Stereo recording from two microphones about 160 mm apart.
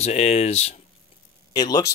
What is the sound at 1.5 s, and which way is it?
Speech, 25° left (ahead or behind).